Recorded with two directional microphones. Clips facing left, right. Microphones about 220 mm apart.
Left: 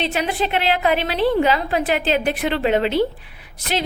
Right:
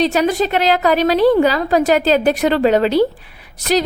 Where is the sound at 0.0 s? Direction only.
40° right (ahead or behind).